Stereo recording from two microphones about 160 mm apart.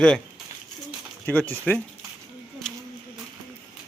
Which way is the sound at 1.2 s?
10° left (ahead or behind).